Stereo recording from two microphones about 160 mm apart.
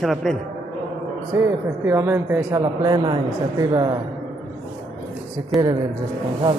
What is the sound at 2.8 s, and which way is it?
A woman's voice, 25° right (ahead or behind).